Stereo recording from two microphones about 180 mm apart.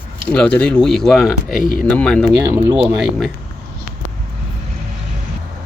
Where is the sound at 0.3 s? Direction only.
10° left (ahead or behind).